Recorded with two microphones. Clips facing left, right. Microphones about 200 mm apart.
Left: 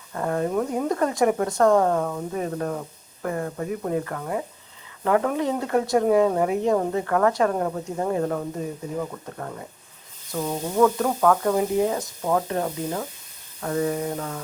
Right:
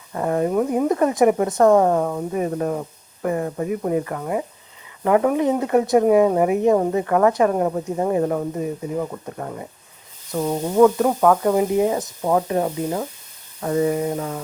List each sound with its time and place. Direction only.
0.1 s speech: 15° right (ahead or behind)
13.6 s mantra: 15° right (ahead or behind)